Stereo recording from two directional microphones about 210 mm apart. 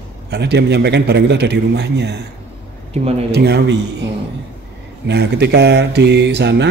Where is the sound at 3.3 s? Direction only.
50° right (ahead or behind).